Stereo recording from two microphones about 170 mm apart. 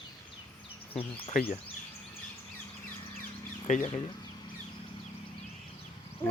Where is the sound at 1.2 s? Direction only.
35° left (ahead or behind).